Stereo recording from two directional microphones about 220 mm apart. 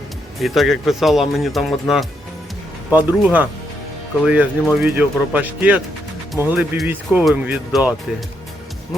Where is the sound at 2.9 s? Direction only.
5° right (ahead or behind).